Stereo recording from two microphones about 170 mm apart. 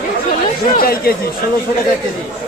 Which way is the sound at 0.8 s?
60° left (ahead or behind).